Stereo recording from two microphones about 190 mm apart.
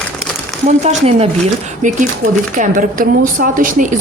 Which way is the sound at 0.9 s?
30° right (ahead or behind).